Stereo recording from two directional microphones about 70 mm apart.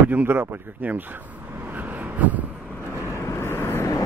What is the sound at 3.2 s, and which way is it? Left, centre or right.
Vehicle, left.